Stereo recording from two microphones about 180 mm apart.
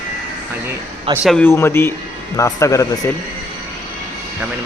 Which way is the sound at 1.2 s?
5° left (ahead or behind).